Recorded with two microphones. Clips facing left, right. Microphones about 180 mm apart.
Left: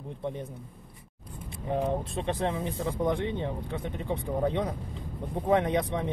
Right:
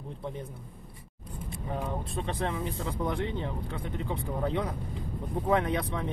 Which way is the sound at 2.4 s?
20° left (ahead or behind).